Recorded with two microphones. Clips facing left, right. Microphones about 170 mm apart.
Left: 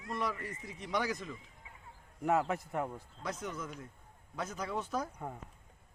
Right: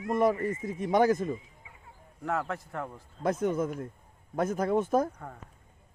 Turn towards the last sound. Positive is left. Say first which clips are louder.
# right 11 dB
turn(degrees=-50)  # may be behind; listen again after turning